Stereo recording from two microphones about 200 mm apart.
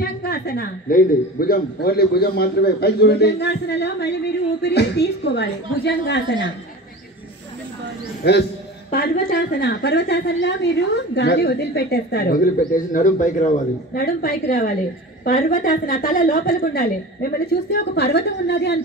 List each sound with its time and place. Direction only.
0.0 s a man's voice: 50° left (ahead or behind)
8.2 s a man's voice: 55° left (ahead or behind)